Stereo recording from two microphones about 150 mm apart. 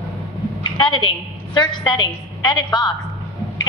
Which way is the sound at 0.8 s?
30° left (ahead or behind).